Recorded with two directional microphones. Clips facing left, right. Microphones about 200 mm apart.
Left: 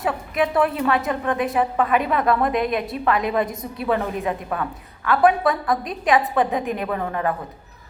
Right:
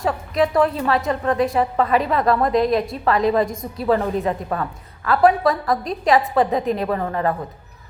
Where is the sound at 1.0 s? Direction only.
Centre (ahead or behind).